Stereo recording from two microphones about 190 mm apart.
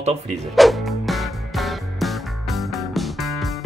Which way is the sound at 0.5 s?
Centre (ahead or behind).